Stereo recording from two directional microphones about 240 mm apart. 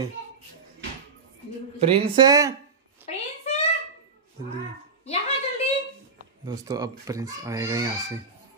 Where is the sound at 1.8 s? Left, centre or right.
Right.